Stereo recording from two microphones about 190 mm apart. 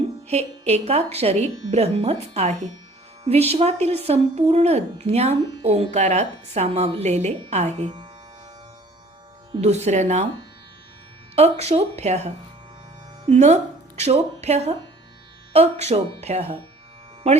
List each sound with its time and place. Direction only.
0.3 s speech: 35° right (ahead or behind)
9.6 s speech: 35° right (ahead or behind)
11.3 s speech: 35° right (ahead or behind)